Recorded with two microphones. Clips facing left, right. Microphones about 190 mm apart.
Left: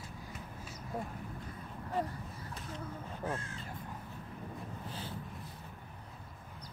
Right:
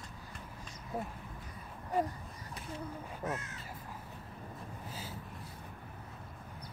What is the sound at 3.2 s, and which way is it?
Speech, 30° left (ahead or behind).